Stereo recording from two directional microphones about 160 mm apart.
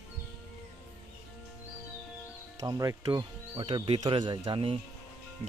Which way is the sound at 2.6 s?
20° right (ahead or behind).